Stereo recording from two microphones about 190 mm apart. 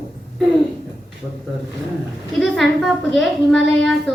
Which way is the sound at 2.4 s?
Centre (ahead or behind).